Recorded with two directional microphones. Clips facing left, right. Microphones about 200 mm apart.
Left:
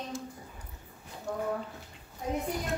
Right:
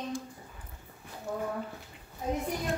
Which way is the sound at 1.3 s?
5° right (ahead or behind).